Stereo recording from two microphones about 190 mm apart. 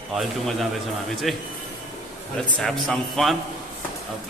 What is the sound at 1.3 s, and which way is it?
Speech, centre (ahead or behind).